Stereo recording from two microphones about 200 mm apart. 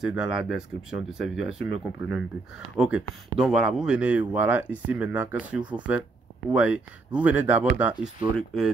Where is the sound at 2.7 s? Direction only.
5° right (ahead or behind).